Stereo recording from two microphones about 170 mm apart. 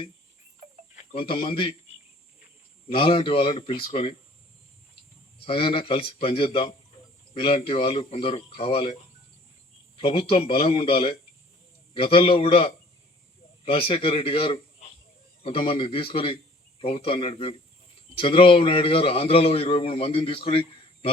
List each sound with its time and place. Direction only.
0.9 s speech: 35° left (ahead or behind)
2.9 s a man's voice: 30° left (ahead or behind)
5.5 s a man's voice: 30° left (ahead or behind)
10.0 s a man's voice: 30° left (ahead or behind)